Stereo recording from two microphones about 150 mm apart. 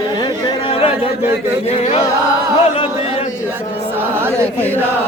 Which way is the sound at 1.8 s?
50° left (ahead or behind).